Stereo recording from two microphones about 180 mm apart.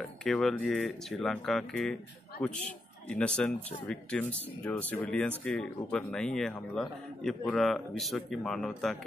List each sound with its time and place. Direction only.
0.0 s a man's voice: centre (ahead or behind)
3.1 s a man's voice: 5° left (ahead or behind)